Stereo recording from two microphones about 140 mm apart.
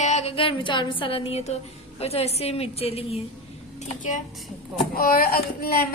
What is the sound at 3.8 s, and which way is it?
Speech, 65° left (ahead or behind).